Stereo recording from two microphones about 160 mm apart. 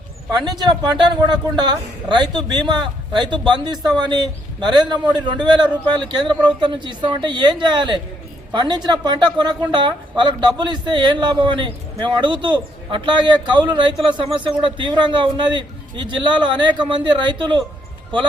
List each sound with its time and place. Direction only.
0.4 s speech: 25° right (ahead or behind)